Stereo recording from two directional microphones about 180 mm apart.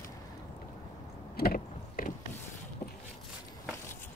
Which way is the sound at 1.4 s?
50° left (ahead or behind).